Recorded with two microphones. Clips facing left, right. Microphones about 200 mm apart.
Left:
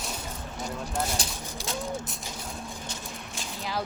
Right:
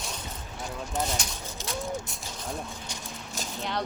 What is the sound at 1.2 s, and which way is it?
Speech, 30° left (ahead or behind).